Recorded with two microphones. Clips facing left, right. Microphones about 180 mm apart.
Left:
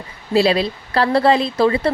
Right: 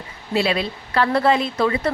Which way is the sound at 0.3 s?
35° left (ahead or behind).